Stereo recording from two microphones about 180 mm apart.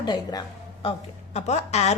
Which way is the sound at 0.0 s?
20° left (ahead or behind).